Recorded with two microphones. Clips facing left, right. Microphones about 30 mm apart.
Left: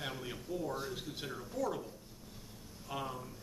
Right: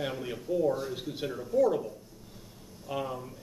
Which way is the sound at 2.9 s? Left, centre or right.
Centre.